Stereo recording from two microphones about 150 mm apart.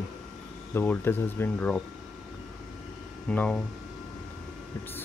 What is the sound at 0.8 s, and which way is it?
Speech, 15° left (ahead or behind).